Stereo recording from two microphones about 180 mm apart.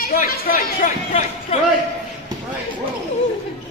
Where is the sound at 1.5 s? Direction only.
35° left (ahead or behind).